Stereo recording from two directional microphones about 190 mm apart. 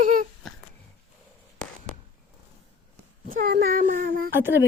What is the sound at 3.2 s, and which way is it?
Speech, 50° right (ahead or behind).